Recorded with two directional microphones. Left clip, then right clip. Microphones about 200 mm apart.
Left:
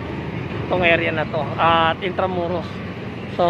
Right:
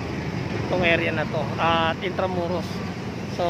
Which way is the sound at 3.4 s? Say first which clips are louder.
Left 7 dB; 15° left (ahead or behind).